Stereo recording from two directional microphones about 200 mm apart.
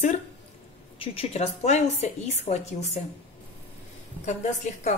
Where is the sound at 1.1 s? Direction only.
30° left (ahead or behind).